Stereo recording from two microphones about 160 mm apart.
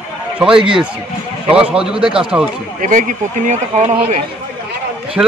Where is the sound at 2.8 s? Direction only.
55° right (ahead or behind).